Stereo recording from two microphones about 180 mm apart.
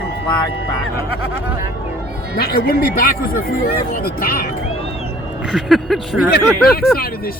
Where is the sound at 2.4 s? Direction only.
60° left (ahead or behind).